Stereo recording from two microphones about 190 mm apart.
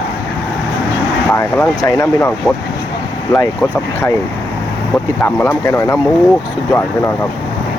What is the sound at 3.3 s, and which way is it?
Speech, 15° left (ahead or behind).